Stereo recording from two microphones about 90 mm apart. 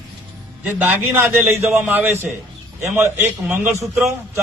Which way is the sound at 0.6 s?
20° right (ahead or behind).